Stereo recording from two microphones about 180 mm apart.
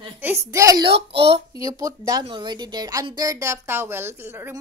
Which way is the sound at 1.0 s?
30° right (ahead or behind).